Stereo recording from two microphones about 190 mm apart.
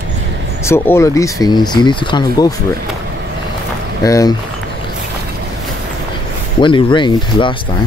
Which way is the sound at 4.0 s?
20° left (ahead or behind).